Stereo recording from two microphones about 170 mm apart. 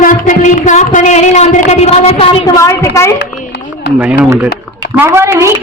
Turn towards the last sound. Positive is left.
turn(degrees=-15)  # may be behind; listen again after turning